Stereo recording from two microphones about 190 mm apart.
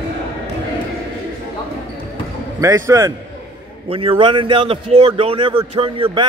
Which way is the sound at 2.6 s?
15° right (ahead or behind).